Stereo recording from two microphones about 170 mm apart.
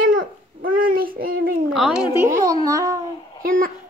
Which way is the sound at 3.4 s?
55° right (ahead or behind).